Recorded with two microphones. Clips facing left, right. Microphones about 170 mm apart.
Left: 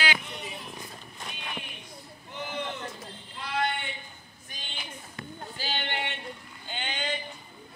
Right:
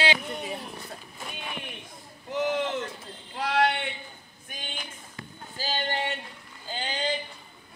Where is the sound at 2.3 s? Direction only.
90° right.